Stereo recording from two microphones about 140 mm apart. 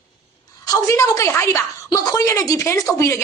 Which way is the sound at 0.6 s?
25° left (ahead or behind).